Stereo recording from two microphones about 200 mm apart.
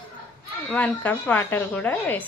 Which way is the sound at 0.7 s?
5° left (ahead or behind).